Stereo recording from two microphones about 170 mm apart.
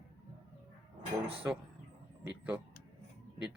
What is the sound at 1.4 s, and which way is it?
Speech, 15° right (ahead or behind).